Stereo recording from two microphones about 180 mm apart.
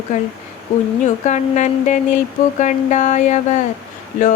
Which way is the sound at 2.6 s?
40° left (ahead or behind).